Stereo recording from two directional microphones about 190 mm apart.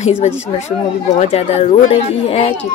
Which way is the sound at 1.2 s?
35° left (ahead or behind).